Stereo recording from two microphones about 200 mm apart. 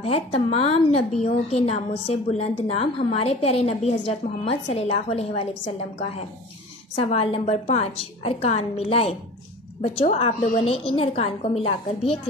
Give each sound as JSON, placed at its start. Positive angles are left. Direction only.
{"t": 0.0, "sound": "a woman's voice", "side_deg": 30}